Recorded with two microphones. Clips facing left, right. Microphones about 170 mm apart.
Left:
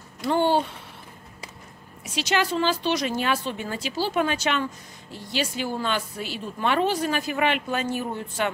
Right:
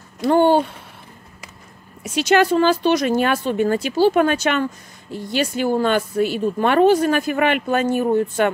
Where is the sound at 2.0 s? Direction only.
50° right (ahead or behind).